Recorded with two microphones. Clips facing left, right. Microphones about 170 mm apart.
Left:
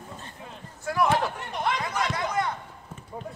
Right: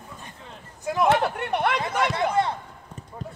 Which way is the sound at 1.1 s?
65° right (ahead or behind).